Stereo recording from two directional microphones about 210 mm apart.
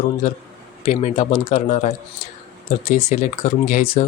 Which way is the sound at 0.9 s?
30° left (ahead or behind).